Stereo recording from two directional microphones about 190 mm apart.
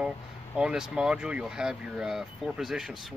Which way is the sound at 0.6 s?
5° right (ahead or behind).